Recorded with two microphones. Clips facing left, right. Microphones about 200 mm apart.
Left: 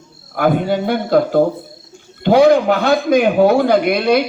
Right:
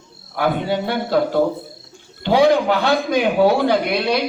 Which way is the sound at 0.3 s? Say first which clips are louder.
Left 4 dB; 50° left (ahead or behind).